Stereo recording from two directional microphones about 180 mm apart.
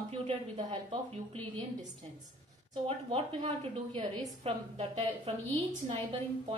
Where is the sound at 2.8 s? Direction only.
30° right (ahead or behind).